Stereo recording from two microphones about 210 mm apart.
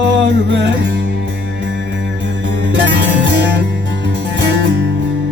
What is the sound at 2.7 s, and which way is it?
Music, 60° right (ahead or behind).